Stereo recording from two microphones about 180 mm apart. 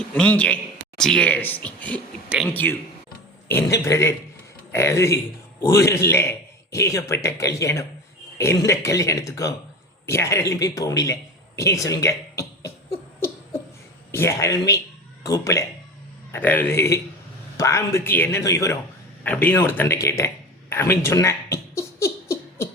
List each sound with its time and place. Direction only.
0.1 s a man's voice: 10° left (ahead or behind)
14.1 s a man's voice: 15° left (ahead or behind)
19.2 s a sound: 10° left (ahead or behind)